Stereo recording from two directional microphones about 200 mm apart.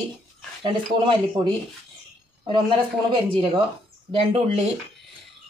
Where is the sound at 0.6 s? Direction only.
25° right (ahead or behind).